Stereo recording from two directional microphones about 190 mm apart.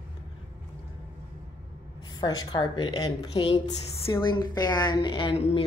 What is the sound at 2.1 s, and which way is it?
A woman's voice, 20° left (ahead or behind).